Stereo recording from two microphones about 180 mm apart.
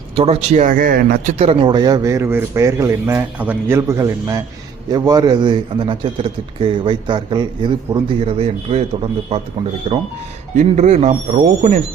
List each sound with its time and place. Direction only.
0.2 s speech: 35° right (ahead or behind); by 1.4 s 55° right (ahead or behind)
1.4 s a man's voice: 30° right (ahead or behind)